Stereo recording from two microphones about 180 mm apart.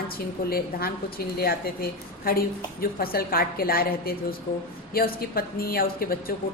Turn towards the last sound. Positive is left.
turn(degrees=55)  # may be behind; listen again after turning